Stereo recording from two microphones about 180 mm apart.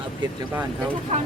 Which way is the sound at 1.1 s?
40° right (ahead or behind).